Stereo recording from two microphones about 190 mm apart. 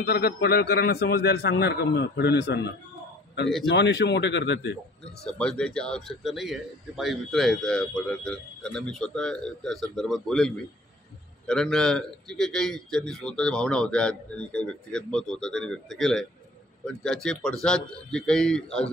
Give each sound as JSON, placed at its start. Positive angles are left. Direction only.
{"t": 0.0, "sound": "a man's voice", "side_deg": 55}
{"t": 3.7, "sound": "a man's voice", "side_deg": 65}
{"t": 5.2, "sound": "speech", "side_deg": 5}